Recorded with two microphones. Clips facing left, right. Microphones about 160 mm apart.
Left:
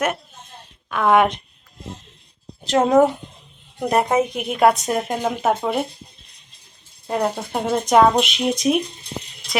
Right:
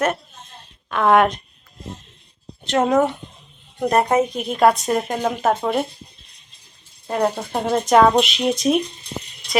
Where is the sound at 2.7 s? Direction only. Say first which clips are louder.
Left 2 dB; 25° left (ahead or behind).